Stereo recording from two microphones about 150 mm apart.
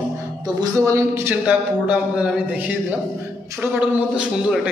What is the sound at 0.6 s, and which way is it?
A man's voice, 20° right (ahead or behind).